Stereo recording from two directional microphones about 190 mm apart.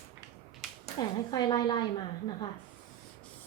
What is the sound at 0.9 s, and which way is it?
Speech, 20° left (ahead or behind).